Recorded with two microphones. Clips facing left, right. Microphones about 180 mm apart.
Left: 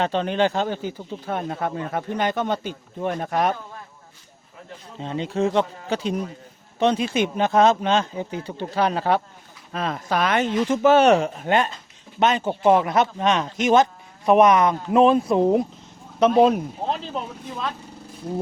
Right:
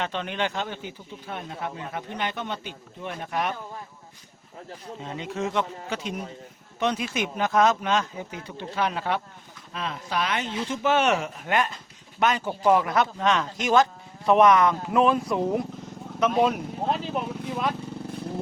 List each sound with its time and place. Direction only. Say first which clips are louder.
0.0 s speech: left 8 dB; 35° left (ahead or behind)
4.9 s speech: left 7 dB; 30° left (ahead or behind)
17.2 s speech: right 1 dB; 10° right (ahead or behind)